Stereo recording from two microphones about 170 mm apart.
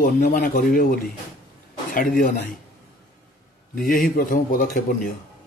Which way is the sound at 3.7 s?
55° left (ahead or behind).